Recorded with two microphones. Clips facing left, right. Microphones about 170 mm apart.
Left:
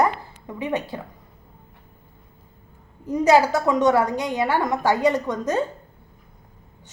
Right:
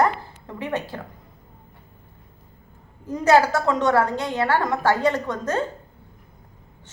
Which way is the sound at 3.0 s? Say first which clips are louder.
Left 1 dB; 15° left (ahead or behind).